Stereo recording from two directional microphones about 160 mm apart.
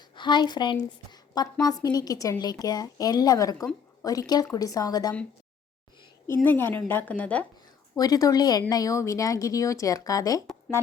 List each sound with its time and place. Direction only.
0.2 s a woman's voice: 30° left (ahead or behind)
6.2 s a woman's voice: 15° left (ahead or behind)
7.9 s a woman's voice: 25° left (ahead or behind)